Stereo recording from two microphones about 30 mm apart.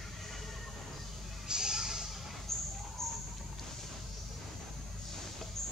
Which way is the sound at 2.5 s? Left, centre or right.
Centre.